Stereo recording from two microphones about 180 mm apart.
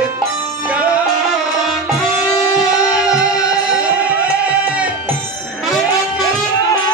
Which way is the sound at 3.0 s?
5° right (ahead or behind).